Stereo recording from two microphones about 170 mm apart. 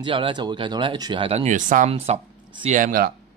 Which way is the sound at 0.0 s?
30° right (ahead or behind).